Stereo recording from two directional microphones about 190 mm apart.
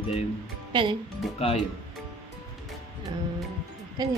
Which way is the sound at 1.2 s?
Centre (ahead or behind).